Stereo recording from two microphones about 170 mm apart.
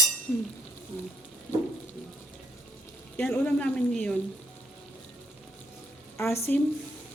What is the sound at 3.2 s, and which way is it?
Speech, 10° left (ahead or behind).